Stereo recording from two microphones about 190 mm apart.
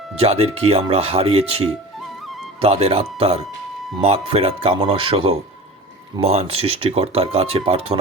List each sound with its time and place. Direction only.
0.2 s speech: 30° right (ahead or behind)